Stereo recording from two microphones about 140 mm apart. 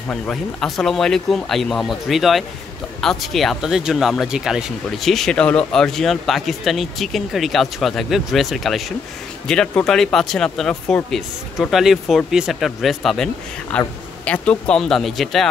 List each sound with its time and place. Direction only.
0.1 s speech: 5° left (ahead or behind)